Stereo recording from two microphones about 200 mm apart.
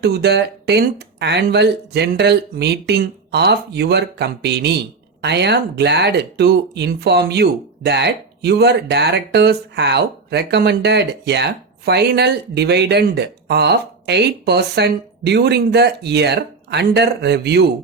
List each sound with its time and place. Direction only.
0.0 s speech: 55° right (ahead or behind)